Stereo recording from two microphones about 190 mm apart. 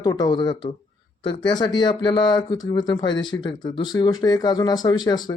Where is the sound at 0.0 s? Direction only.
20° left (ahead or behind).